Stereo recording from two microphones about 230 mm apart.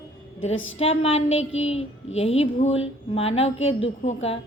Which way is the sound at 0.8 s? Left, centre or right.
Left.